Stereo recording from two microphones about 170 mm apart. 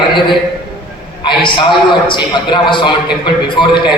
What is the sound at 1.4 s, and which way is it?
A man's voice, 30° left (ahead or behind).